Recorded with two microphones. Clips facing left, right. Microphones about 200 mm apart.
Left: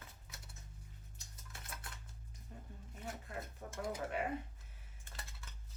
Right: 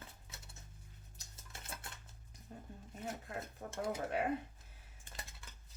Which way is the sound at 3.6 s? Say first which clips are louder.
Right 2 dB; 45° right (ahead or behind).